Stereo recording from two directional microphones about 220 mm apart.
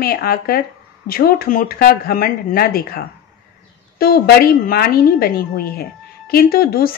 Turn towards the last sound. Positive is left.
turn(degrees=45)  # may be behind; listen again after turning